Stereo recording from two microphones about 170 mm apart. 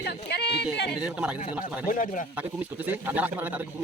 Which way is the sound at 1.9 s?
50° left (ahead or behind).